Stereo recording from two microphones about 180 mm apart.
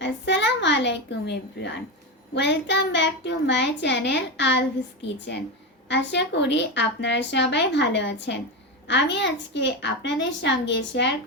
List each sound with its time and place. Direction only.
0.0 s a sound: 75° left (ahead or behind)
2.3 s a woman's voice: 80° left
5.0 s a child's voice: 85° left
5.9 s a woman's voice: 75° left (ahead or behind)